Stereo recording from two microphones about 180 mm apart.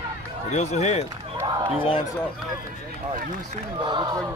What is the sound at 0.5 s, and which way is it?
Speech, 40° left (ahead or behind).